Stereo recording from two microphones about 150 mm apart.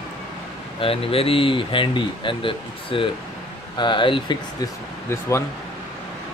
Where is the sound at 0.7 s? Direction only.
40° left (ahead or behind).